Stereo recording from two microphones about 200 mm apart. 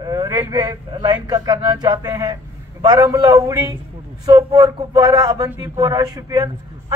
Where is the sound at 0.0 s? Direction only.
20° right (ahead or behind).